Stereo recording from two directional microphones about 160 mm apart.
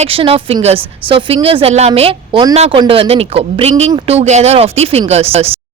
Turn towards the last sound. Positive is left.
turn(degrees=-40)  # may be behind; listen again after turning